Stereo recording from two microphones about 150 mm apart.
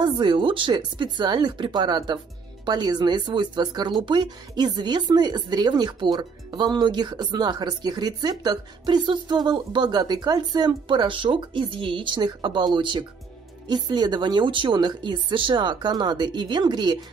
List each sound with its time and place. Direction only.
0.0 s speech: 30° right (ahead or behind)